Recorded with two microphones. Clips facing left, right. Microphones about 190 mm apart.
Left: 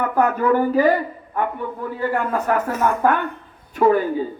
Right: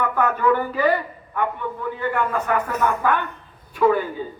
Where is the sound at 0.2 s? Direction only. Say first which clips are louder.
Left 3 dB; 40° left (ahead or behind).